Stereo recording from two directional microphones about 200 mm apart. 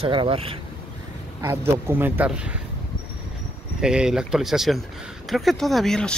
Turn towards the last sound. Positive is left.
turn(degrees=5)  # may be behind; listen again after turning